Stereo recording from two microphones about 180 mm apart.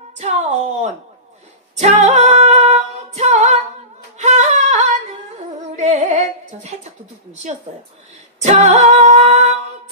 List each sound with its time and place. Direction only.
0.2 s speech: 40° right (ahead or behind)
1.8 s a capella: 40° right (ahead or behind)
4.2 s a sound: 40° right (ahead or behind)
5.8 s music: 40° right (ahead or behind)
8.4 s a capella: 40° right (ahead or behind)